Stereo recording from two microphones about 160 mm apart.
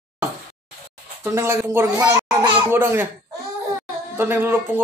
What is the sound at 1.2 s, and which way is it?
Speech, 15° right (ahead or behind).